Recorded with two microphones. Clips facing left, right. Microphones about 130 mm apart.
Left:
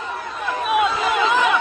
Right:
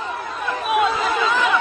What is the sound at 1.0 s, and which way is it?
Chatter, 15° left (ahead or behind).